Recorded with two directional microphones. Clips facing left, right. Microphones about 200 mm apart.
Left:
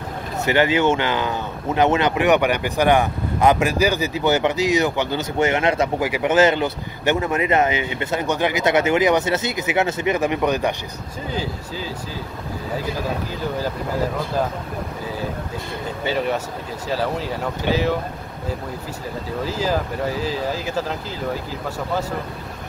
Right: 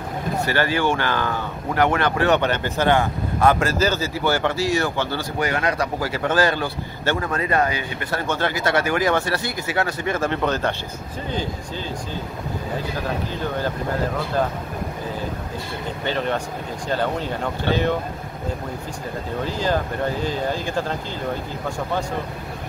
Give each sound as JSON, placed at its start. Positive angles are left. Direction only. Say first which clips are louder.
{"t": 0.4, "sound": "speech", "louder": "left 4 dB", "side_deg": 20}
{"t": 16.1, "sound": "speech", "louder": "left 2 dB", "side_deg": 5}
{"t": 19.4, "sound": "speech", "louder": "left 1 dB", "side_deg": 5}